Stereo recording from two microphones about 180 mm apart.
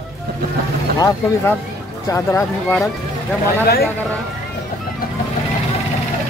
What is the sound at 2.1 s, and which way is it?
Speech, 15° left (ahead or behind).